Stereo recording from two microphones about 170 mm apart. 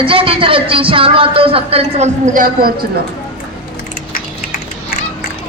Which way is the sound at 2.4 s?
60° right (ahead or behind).